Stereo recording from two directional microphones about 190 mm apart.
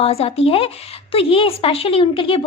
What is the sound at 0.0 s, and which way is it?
Speech, 30° left (ahead or behind).